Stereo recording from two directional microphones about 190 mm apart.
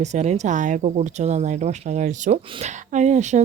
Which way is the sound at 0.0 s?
35° right (ahead or behind).